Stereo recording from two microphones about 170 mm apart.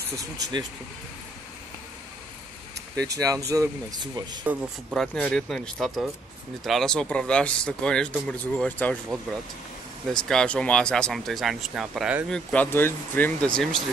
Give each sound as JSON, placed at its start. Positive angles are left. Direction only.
{"t": 0.2, "sound": "speech", "side_deg": -25}
{"t": 3.2, "sound": "speech", "side_deg": -20}
{"t": 4.9, "sound": "speech", "side_deg": 0}
{"t": 10.1, "sound": "speech", "side_deg": 5}
{"t": 12.3, "sound": "speech", "side_deg": 5}